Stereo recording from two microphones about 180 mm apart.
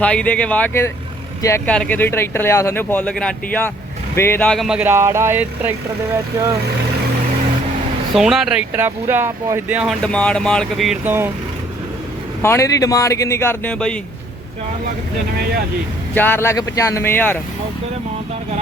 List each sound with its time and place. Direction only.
0.0 s speech: 5° left (ahead or behind); by 5.7 s 10° right (ahead or behind)
8.1 s speech: centre (ahead or behind)
10.0 s speech: 5° left (ahead or behind)
11.0 s speech: 10° right (ahead or behind)
12.4 s speech: 15° left (ahead or behind)
16.1 s speech: 10° left (ahead or behind)